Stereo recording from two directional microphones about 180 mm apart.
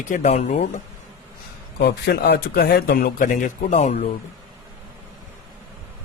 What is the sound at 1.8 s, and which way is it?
Speech, 60° left (ahead or behind).